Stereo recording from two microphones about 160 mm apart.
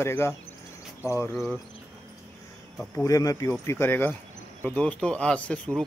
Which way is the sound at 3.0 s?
20° left (ahead or behind).